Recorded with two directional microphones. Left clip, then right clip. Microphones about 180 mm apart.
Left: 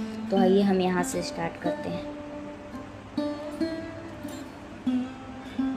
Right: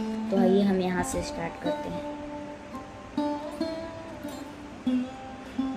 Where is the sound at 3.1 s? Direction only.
Centre (ahead or behind).